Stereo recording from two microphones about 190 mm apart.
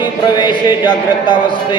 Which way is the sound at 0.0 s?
25° left (ahead or behind).